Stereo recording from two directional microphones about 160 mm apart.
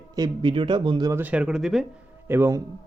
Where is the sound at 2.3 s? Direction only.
15° right (ahead or behind).